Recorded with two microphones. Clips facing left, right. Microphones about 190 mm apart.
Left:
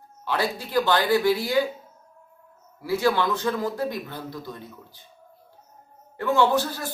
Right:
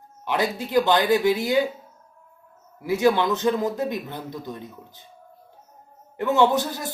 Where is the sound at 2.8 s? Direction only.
20° right (ahead or behind).